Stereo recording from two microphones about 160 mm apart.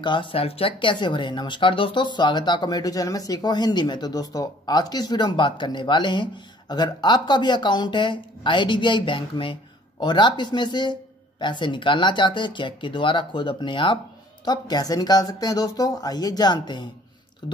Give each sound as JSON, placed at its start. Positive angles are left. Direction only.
{"t": 0.0, "sound": "speech", "side_deg": 30}